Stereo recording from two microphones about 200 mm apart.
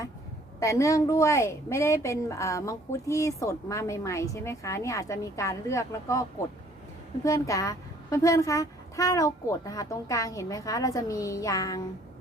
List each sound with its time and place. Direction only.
0.6 s a woman's voice: 15° left (ahead or behind)
7.3 s a woman's voice: 15° left (ahead or behind)